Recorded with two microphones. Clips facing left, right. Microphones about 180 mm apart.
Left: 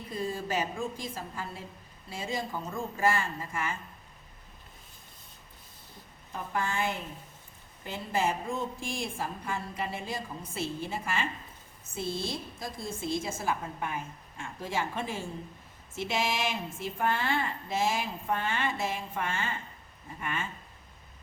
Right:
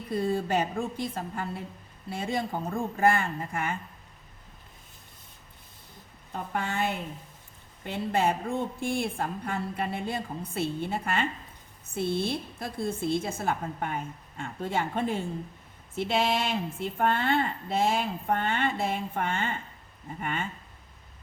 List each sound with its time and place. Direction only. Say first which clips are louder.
0.1 s speech: right 6 dB; 60° right (ahead or behind)
6.3 s speech: right 1 dB; 65° right (ahead or behind)